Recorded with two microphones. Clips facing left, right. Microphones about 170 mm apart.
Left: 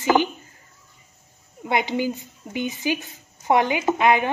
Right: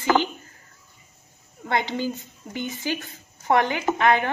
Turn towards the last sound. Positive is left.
turn(degrees=15)  # may be behind; listen again after turning